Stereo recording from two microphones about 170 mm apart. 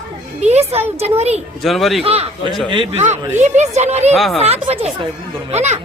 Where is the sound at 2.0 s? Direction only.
35° right (ahead or behind).